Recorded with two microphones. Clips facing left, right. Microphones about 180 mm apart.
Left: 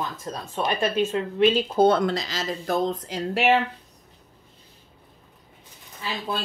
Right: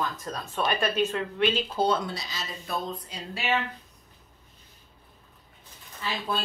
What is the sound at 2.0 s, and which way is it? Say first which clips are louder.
Speech: left 10 dB; 90° left.